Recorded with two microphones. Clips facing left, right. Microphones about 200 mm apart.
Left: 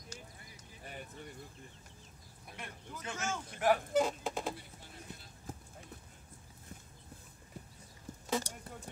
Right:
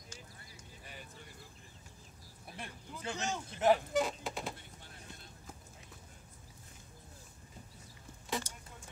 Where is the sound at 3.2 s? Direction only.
20° right (ahead or behind).